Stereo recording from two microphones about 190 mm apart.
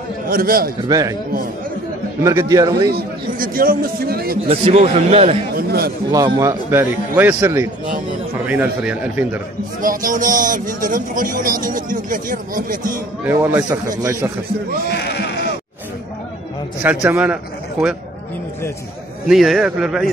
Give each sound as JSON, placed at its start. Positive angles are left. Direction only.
{"t": 0.3, "sound": "a man's voice", "side_deg": -50}
{"t": 0.8, "sound": "a man's voice", "side_deg": -20}
{"t": 2.2, "sound": "a man's voice", "side_deg": -15}
{"t": 2.9, "sound": "a man's voice", "side_deg": -50}
{"t": 4.5, "sound": "a man's voice", "side_deg": -30}
{"t": 5.6, "sound": "a man's voice", "side_deg": -55}
{"t": 6.1, "sound": "a man's voice", "side_deg": -20}
{"t": 9.8, "sound": "a man's voice", "side_deg": -45}
{"t": 13.2, "sound": "a man's voice", "side_deg": -10}
{"t": 14.9, "sound": "speech", "side_deg": 60}
{"t": 16.8, "sound": "a man's voice", "side_deg": -10}
{"t": 19.2, "sound": "a man's voice", "side_deg": 0}